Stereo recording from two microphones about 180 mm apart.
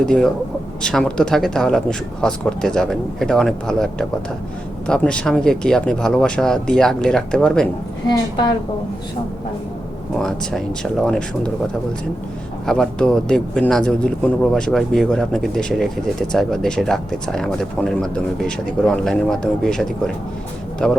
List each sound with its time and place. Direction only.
0.0 s speech: 5° left (ahead or behind)
8.0 s a woman's voice: 25° left (ahead or behind)
10.2 s speech: centre (ahead or behind)
12.6 s speech: 5° left (ahead or behind)
20.8 s speech: 5° left (ahead or behind)